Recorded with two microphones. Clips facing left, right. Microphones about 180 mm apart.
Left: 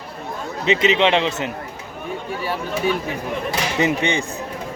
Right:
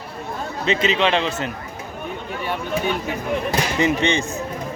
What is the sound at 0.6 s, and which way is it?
Speech, 20° left (ahead or behind).